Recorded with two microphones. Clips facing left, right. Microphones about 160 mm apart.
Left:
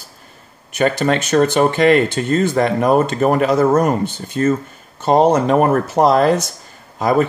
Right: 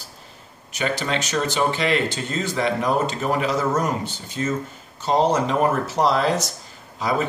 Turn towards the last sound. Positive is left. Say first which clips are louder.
# left 8 dB
turn(degrees=50)  # may be behind; listen again after turning